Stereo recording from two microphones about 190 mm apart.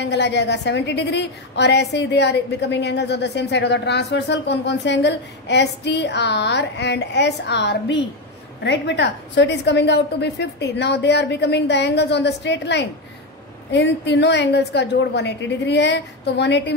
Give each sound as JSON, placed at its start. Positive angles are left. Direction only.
{"t": 0.0, "sound": "a woman's voice", "side_deg": 65}